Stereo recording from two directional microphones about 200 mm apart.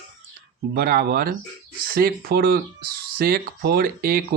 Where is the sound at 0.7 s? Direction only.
50° right (ahead or behind).